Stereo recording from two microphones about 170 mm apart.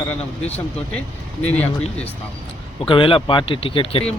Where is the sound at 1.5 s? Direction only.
40° left (ahead or behind).